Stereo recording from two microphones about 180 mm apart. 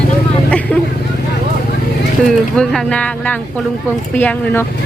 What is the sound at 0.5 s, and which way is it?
Vehicle, 5° left (ahead or behind).